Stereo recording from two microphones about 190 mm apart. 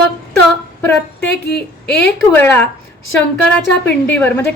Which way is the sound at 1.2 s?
60° left (ahead or behind).